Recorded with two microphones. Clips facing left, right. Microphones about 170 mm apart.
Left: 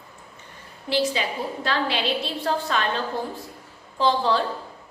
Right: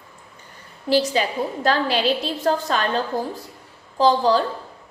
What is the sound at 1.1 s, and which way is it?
A woman's voice, 45° right (ahead or behind).